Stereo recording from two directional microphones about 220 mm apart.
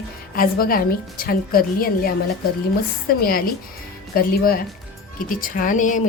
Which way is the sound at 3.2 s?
40° left (ahead or behind).